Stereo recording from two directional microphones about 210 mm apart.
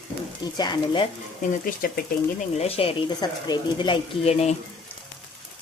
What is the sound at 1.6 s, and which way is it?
Speech, 45° left (ahead or behind).